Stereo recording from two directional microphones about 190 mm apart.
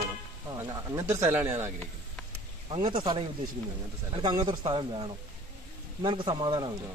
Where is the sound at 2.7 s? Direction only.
30° right (ahead or behind).